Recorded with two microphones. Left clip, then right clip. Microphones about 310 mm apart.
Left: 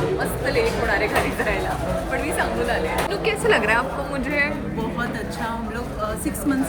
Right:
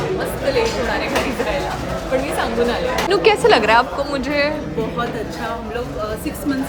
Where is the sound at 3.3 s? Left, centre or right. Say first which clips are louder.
Right 11 dB; centre.